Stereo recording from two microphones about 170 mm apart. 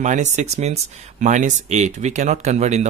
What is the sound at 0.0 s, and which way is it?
Speech, 45° right (ahead or behind).